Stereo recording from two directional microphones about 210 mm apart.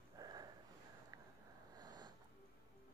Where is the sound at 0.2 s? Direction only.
20° right (ahead or behind).